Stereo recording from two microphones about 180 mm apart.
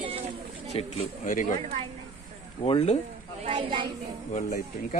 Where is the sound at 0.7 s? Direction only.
35° left (ahead or behind).